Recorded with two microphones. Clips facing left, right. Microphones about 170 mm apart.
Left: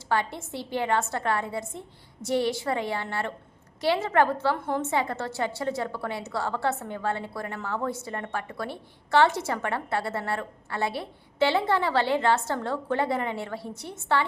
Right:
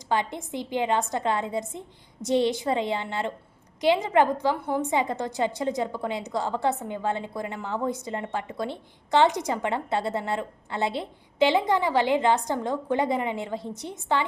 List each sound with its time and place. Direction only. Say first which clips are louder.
0.1 s a woman's voice: right 1 dB; 20° right (ahead or behind)